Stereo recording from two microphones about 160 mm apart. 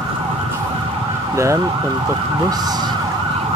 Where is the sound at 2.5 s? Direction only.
25° right (ahead or behind).